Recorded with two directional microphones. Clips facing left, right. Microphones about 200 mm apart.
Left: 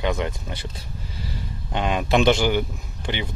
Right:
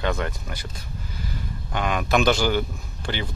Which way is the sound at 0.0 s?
15° left (ahead or behind).